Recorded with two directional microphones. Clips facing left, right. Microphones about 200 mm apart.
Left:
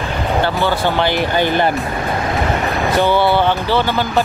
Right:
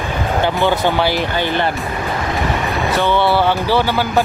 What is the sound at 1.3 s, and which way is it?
Speech, 15° left (ahead or behind).